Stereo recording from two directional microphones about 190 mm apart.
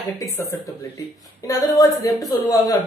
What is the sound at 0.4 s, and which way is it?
Speech, 15° left (ahead or behind).